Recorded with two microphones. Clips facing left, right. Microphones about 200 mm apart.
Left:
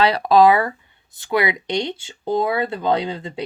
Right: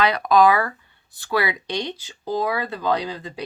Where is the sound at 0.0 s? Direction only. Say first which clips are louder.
Left 3 dB; 30° left (ahead or behind).